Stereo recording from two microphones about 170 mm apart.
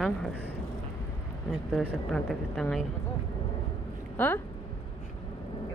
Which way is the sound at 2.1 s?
5° left (ahead or behind).